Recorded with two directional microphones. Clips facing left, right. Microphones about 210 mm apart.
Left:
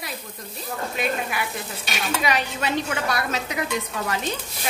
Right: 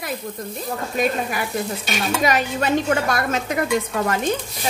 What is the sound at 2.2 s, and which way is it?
A woman's voice, 45° right (ahead or behind).